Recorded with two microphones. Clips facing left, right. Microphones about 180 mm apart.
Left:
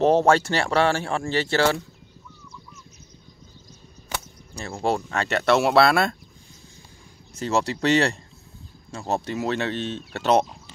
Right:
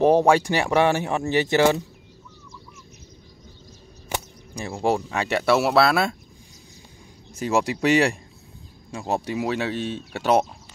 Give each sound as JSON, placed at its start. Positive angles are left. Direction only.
{"t": 0.0, "sound": "speech", "side_deg": -15}
{"t": 4.1, "sound": "speech", "side_deg": -15}
{"t": 7.3, "sound": "speech", "side_deg": -15}